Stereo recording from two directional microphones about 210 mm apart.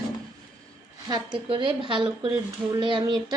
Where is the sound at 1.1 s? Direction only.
20° right (ahead or behind).